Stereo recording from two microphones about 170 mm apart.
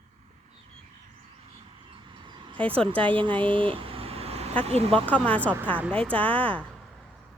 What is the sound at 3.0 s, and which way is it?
Speech, 30° right (ahead or behind).